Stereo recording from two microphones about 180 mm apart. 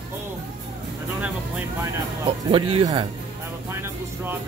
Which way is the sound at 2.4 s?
25° right (ahead or behind).